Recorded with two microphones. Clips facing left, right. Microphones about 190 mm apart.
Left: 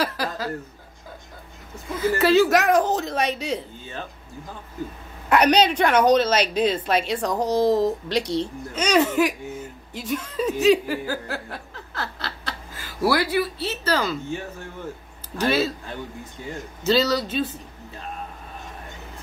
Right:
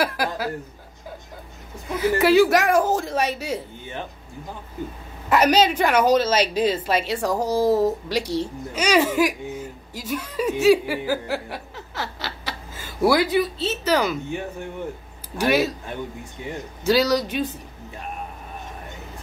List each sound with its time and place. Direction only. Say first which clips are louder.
0.0 s a woman's voice: right 2 dB; 10° right (ahead or behind)
2.0 s a woman's voice: right 1 dB; 15° right (ahead or behind)
5.3 s a woman's voice: even; 5° right (ahead or behind)